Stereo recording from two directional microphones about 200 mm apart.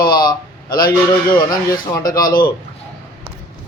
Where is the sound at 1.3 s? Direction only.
20° left (ahead or behind).